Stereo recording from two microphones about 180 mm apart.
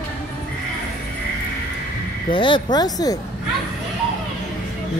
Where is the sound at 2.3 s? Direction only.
25° left (ahead or behind).